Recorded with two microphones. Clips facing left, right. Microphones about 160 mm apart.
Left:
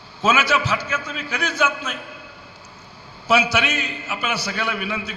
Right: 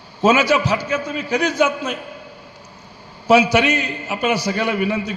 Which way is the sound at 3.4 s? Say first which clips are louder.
Right 6 dB; 15° right (ahead or behind).